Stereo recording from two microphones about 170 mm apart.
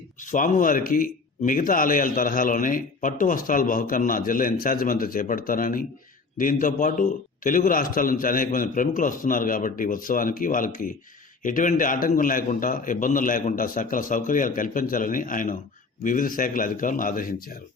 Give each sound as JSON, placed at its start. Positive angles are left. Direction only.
{"t": 0.2, "sound": "speech", "side_deg": 50}